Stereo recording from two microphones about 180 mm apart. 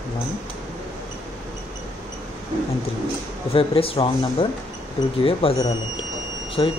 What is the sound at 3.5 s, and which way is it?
Speech, 30° left (ahead or behind).